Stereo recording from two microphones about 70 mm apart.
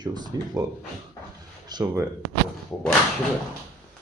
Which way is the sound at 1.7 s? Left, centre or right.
Right.